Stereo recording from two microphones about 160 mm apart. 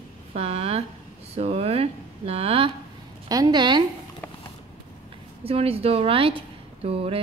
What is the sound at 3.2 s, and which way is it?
Speech, 25° right (ahead or behind).